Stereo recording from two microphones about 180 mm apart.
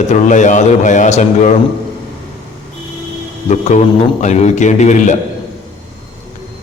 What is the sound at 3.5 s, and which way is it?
A man's voice, 40° left (ahead or behind).